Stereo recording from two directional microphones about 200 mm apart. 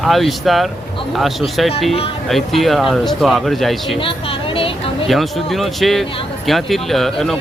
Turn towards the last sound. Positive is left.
turn(degrees=0)  # may be behind; listen again after turning